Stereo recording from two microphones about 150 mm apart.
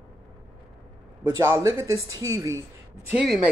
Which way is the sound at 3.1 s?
5° right (ahead or behind).